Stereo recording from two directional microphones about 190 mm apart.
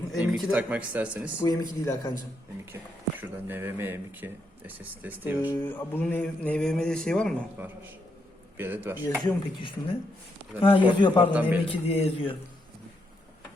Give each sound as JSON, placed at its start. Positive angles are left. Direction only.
{"t": 0.1, "sound": "speech", "side_deg": -5}
{"t": 1.4, "sound": "speech", "side_deg": 20}
{"t": 3.2, "sound": "speech", "side_deg": -10}
{"t": 5.5, "sound": "speech", "side_deg": 10}
{"t": 8.5, "sound": "speech", "side_deg": -10}
{"t": 9.2, "sound": "speech", "side_deg": 25}
{"t": 11.3, "sound": "speech", "side_deg": -10}
{"t": 11.7, "sound": "speech", "side_deg": 30}